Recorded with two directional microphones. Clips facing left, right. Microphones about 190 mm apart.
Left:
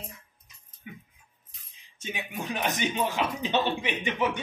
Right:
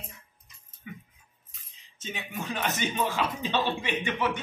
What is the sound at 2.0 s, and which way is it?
Speech, 15° left (ahead or behind).